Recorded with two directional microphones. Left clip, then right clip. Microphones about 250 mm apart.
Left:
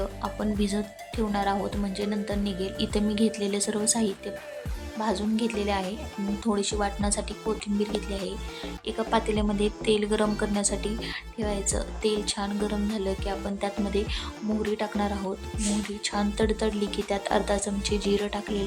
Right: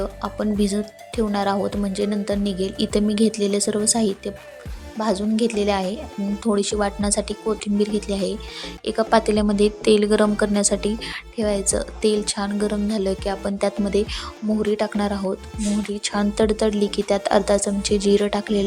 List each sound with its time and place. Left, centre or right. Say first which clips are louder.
0.0 s a woman's voice: right 5 dB; centre